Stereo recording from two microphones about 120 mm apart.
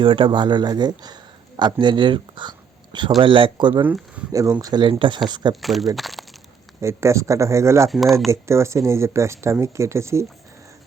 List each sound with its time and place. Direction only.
0.0 s speech: 45° right (ahead or behind)
4.3 s speech: 30° right (ahead or behind)
5.5 s speech: centre (ahead or behind)
6.8 s speech: 25° right (ahead or behind)
7.9 s speech: centre (ahead or behind)
8.3 s speech: 25° right (ahead or behind)